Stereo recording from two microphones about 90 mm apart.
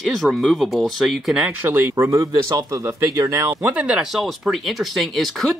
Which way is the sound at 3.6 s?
10° right (ahead or behind).